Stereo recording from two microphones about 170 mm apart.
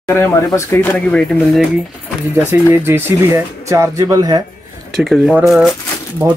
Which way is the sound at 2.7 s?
15° right (ahead or behind).